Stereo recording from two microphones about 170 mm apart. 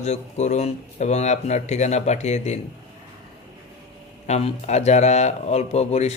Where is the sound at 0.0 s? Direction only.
40° left (ahead or behind).